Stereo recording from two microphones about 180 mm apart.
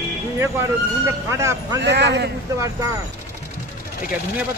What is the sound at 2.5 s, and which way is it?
Speech, 15° right (ahead or behind).